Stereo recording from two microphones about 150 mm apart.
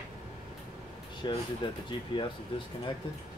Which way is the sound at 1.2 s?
30° left (ahead or behind).